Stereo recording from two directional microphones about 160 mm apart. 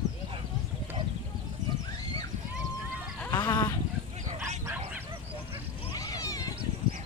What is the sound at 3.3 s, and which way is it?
Sheep, 25° left (ahead or behind).